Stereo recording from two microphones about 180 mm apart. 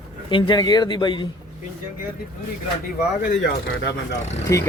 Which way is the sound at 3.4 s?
90° left.